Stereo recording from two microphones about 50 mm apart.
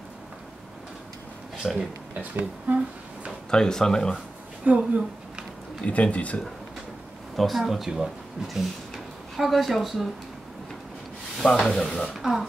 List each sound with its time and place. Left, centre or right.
1.6 s speech: centre
2.1 s speech: right
3.4 s speech: centre
4.6 s speech: right
5.9 s speech: left
7.3 s speech: centre
8.9 s a sound: centre
11.3 s speech: centre
12.1 s speech: centre